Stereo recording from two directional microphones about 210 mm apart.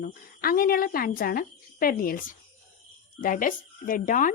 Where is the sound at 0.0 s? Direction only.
45° left (ahead or behind).